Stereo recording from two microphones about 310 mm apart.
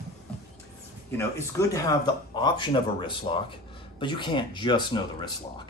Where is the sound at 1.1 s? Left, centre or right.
Centre.